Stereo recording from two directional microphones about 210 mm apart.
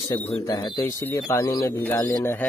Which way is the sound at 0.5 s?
20° left (ahead or behind).